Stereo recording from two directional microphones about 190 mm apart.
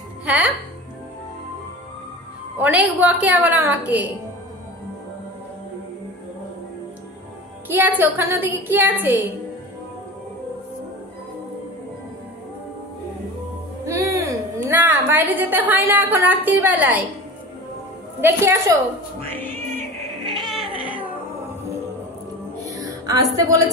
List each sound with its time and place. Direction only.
0.2 s music: 5° right (ahead or behind)
2.6 s music: 10° right (ahead or behind)
7.6 s music: 10° right (ahead or behind)
13.8 s a woman's voice: 15° right (ahead or behind)
18.2 s music: 15° right (ahead or behind)
19.2 s music: 10° left (ahead or behind)
20.4 s cat: 5° right (ahead or behind)
22.6 s music: 20° right (ahead or behind)